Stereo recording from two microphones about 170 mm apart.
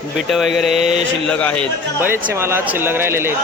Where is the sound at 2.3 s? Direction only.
15° right (ahead or behind).